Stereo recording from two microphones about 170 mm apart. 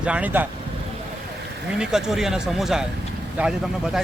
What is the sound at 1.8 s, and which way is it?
Speech, 5° right (ahead or behind).